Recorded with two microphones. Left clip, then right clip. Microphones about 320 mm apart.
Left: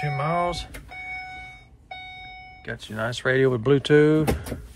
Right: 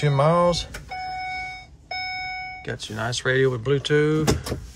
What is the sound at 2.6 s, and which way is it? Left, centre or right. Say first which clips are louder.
Speech: right 1 dB; centre.